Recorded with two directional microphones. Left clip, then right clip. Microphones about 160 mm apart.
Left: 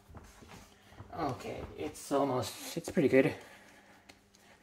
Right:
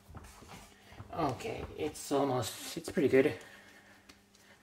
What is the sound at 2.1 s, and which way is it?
Speech, 5° left (ahead or behind).